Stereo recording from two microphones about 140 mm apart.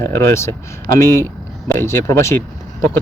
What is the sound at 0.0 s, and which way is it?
Speech, 20° left (ahead or behind).